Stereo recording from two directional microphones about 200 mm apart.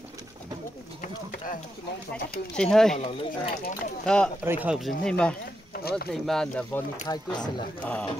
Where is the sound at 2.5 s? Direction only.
5° left (ahead or behind).